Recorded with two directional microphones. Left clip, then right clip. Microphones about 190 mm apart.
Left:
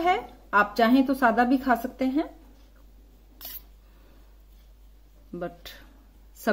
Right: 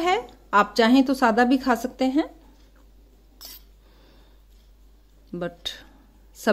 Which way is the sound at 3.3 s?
Centre (ahead or behind).